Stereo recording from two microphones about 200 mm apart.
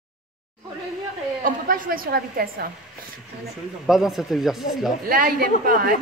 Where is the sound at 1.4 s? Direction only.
45° right (ahead or behind).